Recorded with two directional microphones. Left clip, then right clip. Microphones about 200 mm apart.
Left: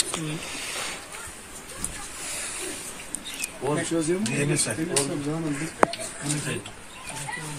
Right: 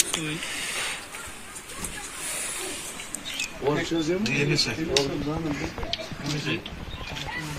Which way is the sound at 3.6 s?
Centre (ahead or behind).